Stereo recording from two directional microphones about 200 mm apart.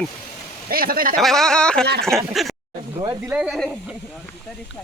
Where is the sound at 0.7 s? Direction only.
45° right (ahead or behind).